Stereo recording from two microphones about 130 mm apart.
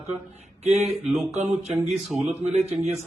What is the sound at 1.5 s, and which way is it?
Speech, 55° right (ahead or behind).